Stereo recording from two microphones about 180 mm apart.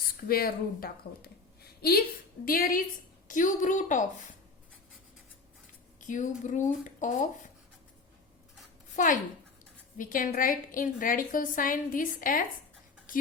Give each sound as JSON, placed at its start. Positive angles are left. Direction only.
{"t": 0.3, "sound": "a woman's voice", "side_deg": 55}
{"t": 6.0, "sound": "a woman's voice", "side_deg": 45}
{"t": 9.0, "sound": "a woman's voice", "side_deg": 45}